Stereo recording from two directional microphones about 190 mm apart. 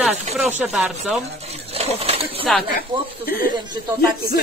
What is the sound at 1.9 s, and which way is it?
Speech, 30° right (ahead or behind).